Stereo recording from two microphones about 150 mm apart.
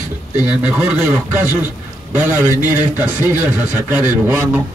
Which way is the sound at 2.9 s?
15° right (ahead or behind).